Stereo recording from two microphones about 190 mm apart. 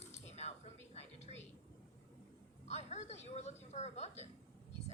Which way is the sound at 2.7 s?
35° left (ahead or behind).